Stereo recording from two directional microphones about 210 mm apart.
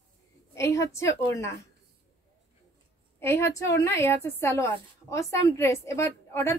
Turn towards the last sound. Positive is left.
turn(degrees=15)  # may be behind; listen again after turning